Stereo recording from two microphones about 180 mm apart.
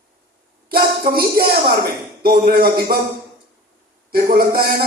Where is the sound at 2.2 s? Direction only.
55° right (ahead or behind).